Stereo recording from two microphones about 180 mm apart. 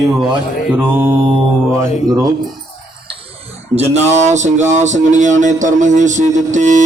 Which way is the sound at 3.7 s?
35° right (ahead or behind).